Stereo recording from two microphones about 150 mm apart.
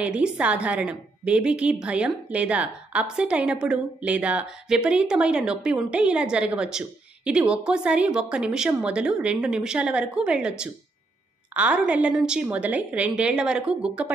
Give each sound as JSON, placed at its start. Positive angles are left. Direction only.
{"t": 0.0, "sound": "a woman's voice", "side_deg": -5}